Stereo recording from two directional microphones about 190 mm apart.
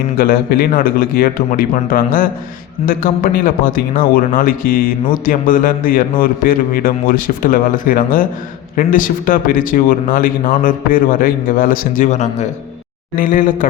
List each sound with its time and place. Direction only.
0.2 s a man's voice: 50° left (ahead or behind)